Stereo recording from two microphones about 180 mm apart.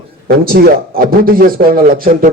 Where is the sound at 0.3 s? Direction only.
60° right (ahead or behind).